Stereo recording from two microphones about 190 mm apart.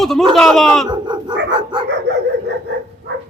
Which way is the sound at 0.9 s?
25° right (ahead or behind).